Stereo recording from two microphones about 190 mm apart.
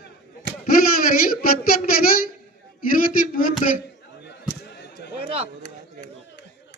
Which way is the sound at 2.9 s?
45° left (ahead or behind).